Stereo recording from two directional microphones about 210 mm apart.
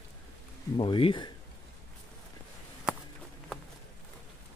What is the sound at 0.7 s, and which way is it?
Speech, 25° left (ahead or behind).